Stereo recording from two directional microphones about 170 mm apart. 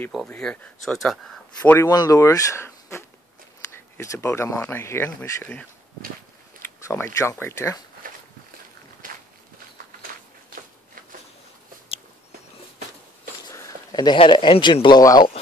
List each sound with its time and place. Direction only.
0.1 s speech: centre (ahead or behind)
6.9 s speech: 15° left (ahead or behind)
13.5 s speech: 20° left (ahead or behind)